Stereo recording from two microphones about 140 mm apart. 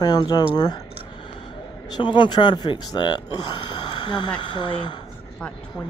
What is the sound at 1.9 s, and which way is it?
Speech, 35° left (ahead or behind).